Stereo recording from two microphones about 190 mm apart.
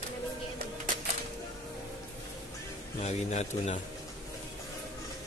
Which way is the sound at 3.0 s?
35° left (ahead or behind).